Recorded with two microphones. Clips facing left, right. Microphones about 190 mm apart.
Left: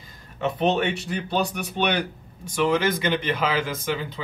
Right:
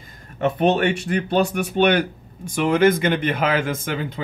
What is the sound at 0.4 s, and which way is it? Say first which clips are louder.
A man's voice: right 4 dB; 55° right (ahead or behind).